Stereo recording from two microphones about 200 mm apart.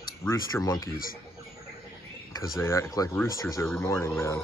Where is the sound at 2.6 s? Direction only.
15° left (ahead or behind).